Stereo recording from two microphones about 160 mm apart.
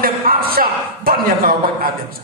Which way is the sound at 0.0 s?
65° right (ahead or behind).